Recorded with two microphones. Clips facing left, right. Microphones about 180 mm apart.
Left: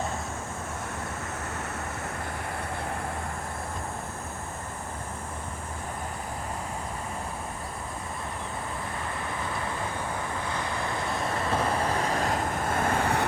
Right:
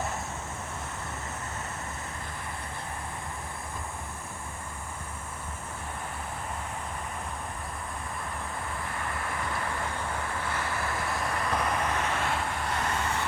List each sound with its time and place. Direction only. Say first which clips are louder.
10.5 s vehicle: left 1 dB; 20° left (ahead or behind); by 13.2 s 60° left (ahead or behind)